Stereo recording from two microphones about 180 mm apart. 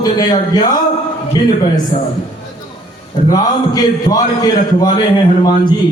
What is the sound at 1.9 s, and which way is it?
Speech, 45° left (ahead or behind).